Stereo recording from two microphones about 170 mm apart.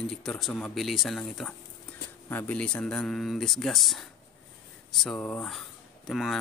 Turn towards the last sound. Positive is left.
turn(degrees=0)  # may be behind; listen again after turning